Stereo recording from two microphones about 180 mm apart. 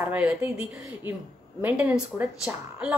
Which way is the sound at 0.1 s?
10° right (ahead or behind).